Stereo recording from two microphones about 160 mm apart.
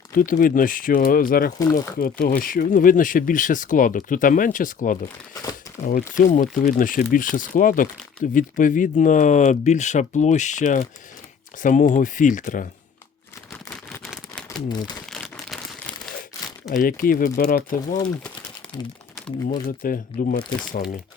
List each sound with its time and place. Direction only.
0.1 s speech: 60° left (ahead or behind)
13.5 s a sound: 10° left (ahead or behind)
14.0 s shuffling cards: centre (ahead or behind)
15.1 s crumpling: centre (ahead or behind)
16.7 s speech: 60° left (ahead or behind)
19.6 s speech: 60° left (ahead or behind)